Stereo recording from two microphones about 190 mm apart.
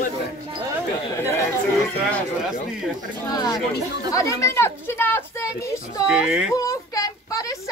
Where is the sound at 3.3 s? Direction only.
20° left (ahead or behind).